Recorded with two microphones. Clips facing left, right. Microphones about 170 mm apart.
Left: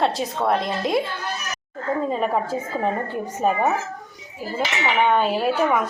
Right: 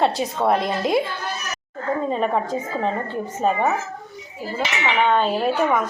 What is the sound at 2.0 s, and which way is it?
A woman's voice, 5° left (ahead or behind).